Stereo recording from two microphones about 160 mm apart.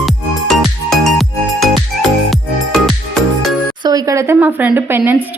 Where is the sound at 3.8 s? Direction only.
25° right (ahead or behind).